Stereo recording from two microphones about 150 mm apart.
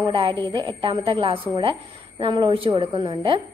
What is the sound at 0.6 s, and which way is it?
A woman's voice, 35° right (ahead or behind).